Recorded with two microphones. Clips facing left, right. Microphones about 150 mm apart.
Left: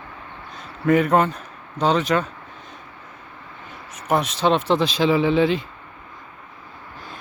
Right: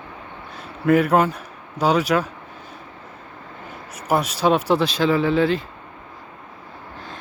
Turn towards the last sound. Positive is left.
turn(degrees=15)  # may be behind; listen again after turning